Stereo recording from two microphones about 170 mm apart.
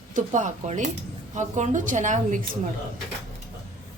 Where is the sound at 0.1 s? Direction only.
45° right (ahead or behind).